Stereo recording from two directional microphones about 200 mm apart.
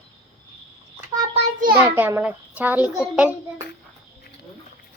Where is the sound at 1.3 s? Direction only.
40° right (ahead or behind).